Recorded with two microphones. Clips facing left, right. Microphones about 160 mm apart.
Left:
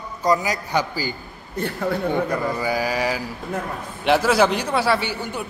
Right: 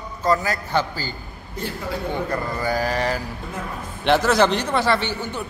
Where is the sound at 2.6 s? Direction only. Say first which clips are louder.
Even; 10° left (ahead or behind).